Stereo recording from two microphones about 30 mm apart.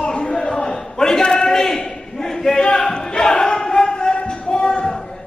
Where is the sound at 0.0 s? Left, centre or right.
Left.